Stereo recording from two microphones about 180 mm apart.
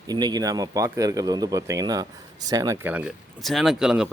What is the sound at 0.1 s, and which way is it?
Speech, 20° right (ahead or behind).